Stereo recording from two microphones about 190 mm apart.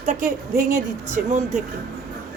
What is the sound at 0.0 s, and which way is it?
A woman's voice, 45° right (ahead or behind).